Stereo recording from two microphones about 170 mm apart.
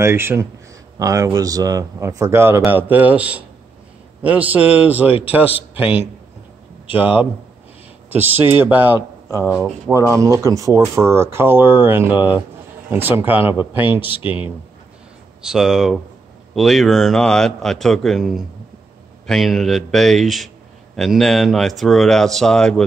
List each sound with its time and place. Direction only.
0.0 s speech: 15° right (ahead or behind)
14.2 s speech: 30° left (ahead or behind)
15.4 s a man's voice: 5° right (ahead or behind)